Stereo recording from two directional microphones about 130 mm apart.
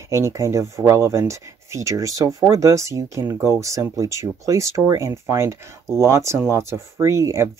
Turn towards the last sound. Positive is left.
turn(degrees=-20)  # may be behind; listen again after turning